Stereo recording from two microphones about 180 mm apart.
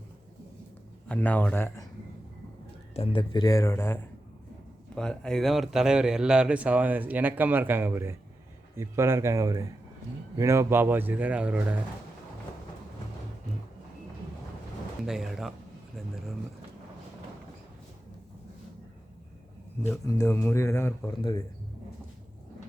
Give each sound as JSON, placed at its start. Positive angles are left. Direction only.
{"t": 1.0, "sound": "speech", "side_deg": 10}
{"t": 2.9, "sound": "a man's voice", "side_deg": 30}
{"t": 15.0, "sound": "speech", "side_deg": 0}
{"t": 19.9, "sound": "speech", "side_deg": 15}